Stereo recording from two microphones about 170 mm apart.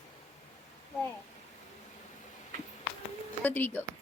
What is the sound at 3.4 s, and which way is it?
Speech, 10° left (ahead or behind).